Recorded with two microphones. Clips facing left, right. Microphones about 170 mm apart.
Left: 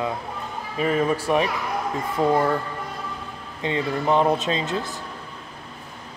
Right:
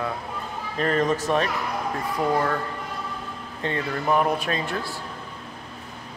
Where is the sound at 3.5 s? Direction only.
15° left (ahead or behind).